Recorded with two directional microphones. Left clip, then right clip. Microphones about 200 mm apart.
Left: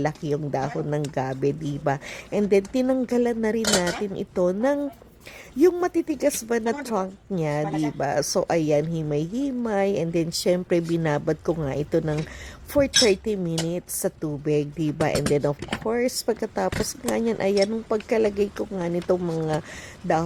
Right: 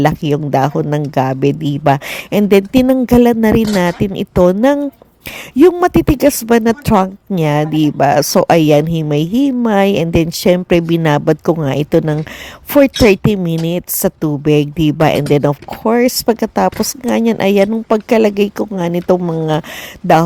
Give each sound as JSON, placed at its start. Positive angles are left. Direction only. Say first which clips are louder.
{"t": 0.0, "sound": "speech", "louder": "right 12 dB", "side_deg": -35}